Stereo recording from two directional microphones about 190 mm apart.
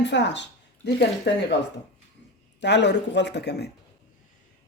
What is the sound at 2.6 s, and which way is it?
Speech, 65° left (ahead or behind).